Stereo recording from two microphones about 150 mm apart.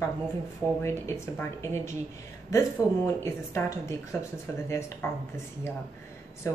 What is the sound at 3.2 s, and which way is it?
Speech, 20° left (ahead or behind).